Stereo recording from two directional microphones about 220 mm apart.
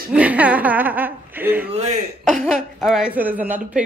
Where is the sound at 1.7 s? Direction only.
30° right (ahead or behind).